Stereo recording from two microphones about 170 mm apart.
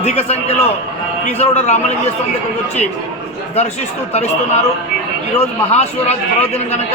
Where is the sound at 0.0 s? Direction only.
35° left (ahead or behind).